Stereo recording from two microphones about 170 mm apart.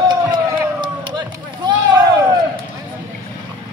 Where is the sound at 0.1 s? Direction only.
20° right (ahead or behind).